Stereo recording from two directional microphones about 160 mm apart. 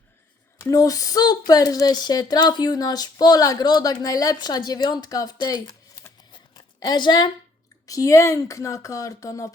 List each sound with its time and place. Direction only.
0.6 s a woman's voice: 20° left (ahead or behind)